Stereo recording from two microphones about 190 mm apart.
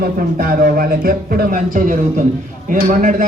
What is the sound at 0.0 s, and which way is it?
Speech, 50° right (ahead or behind).